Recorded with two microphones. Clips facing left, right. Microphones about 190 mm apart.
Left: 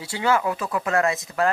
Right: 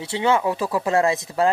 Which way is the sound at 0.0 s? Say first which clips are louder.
Right 2 dB; 20° right (ahead or behind).